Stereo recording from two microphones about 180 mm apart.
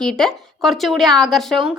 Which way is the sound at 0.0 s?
5° left (ahead or behind).